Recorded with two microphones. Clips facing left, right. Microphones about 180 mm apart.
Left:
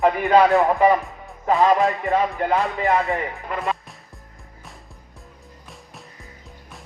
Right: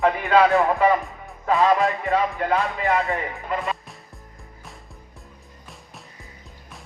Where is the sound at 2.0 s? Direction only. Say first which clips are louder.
Left 1 dB; 15° left (ahead or behind).